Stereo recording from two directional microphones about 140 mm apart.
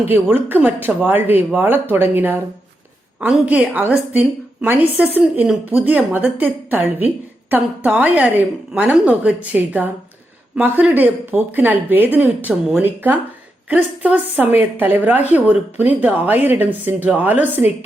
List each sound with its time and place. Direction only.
0.1 s a woman's voice: 15° right (ahead or behind)